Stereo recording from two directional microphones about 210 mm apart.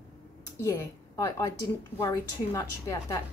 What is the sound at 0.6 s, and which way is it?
A woman's voice, 15° left (ahead or behind).